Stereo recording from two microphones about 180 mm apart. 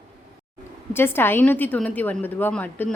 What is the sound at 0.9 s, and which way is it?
A woman's voice, 10° left (ahead or behind).